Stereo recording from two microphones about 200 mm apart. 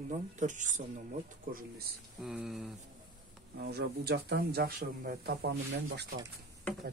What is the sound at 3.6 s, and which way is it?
Speech, 55° right (ahead or behind).